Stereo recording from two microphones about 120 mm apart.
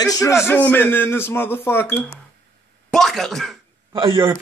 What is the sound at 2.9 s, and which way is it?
Speech, 5° left (ahead or behind).